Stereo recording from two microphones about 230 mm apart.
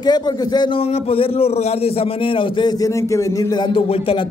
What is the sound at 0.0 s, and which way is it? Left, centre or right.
A man's voice, centre.